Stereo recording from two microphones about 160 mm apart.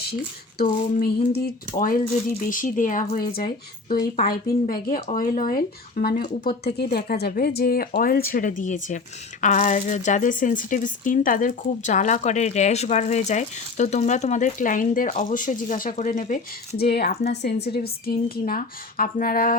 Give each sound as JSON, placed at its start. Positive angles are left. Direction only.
{"t": 0.6, "sound": "speech", "side_deg": 65}
{"t": 6.7, "sound": "speech", "side_deg": 75}
{"t": 16.7, "sound": "speech", "side_deg": 80}
{"t": 17.2, "sound": "a woman's voice", "side_deg": 90}
{"t": 17.7, "sound": "speech", "side_deg": 70}